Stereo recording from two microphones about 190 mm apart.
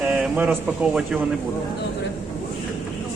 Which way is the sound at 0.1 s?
5° right (ahead or behind).